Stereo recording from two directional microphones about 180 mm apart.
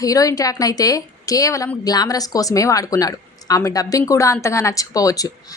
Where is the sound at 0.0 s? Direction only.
20° left (ahead or behind).